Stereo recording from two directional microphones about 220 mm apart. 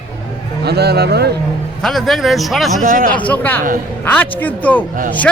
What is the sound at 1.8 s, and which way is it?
A man's voice, centre (ahead or behind).